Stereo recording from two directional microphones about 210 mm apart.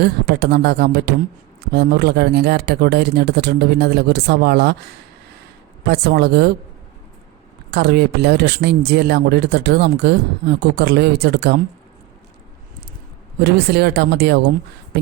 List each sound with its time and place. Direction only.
0.0 s speech: 50° right (ahead or behind)
5.9 s speech: 50° right (ahead or behind)
7.7 s speech: 50° right (ahead or behind)
13.4 s speech: 50° right (ahead or behind)